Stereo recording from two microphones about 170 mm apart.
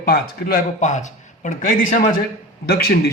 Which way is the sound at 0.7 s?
45° left (ahead or behind).